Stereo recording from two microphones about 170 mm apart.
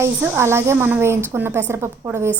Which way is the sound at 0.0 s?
15° right (ahead or behind).